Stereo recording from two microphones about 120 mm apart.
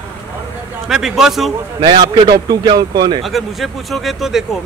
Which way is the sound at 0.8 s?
5° right (ahead or behind).